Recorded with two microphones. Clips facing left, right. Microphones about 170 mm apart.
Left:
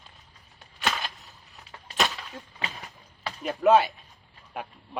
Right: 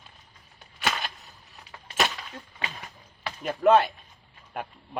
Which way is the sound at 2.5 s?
25° left (ahead or behind).